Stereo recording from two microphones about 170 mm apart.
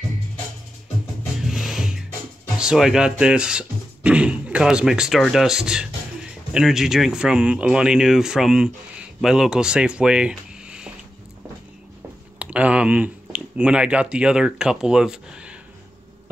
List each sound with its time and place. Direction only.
1.4 s music: centre (ahead or behind)
2.6 s speech: 5° right (ahead or behind)
12.4 s speech: 10° right (ahead or behind)